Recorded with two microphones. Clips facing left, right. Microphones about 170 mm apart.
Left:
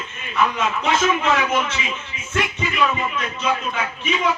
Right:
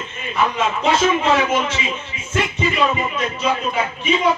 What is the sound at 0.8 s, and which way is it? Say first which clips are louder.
Speech: right 3 dB; 30° right (ahead or behind).